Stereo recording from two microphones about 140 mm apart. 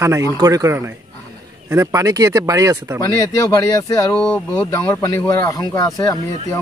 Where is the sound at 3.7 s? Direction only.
25° left (ahead or behind).